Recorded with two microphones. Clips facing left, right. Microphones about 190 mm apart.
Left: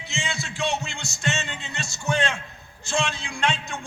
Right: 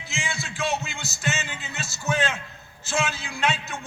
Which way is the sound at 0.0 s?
Centre (ahead or behind).